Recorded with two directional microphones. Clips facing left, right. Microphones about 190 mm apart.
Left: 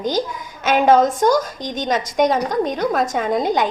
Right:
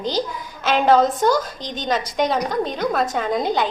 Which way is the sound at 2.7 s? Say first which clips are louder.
Left 2 dB; 10° left (ahead or behind).